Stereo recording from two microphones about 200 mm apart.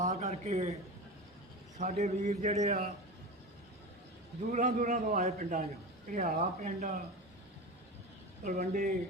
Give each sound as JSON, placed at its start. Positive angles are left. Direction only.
{"t": 0.0, "sound": "a man's voice", "side_deg": -35}
{"t": 1.8, "sound": "a man's voice", "side_deg": -35}
{"t": 4.5, "sound": "a man's voice", "side_deg": -40}
{"t": 8.5, "sound": "speech", "side_deg": -50}